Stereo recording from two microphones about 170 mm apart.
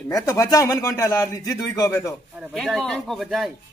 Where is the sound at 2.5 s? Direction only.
5° left (ahead or behind).